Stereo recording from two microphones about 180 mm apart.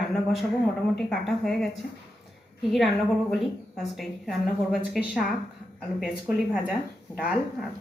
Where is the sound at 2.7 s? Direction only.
Centre (ahead or behind).